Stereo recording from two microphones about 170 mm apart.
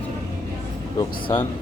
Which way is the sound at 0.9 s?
25° left (ahead or behind).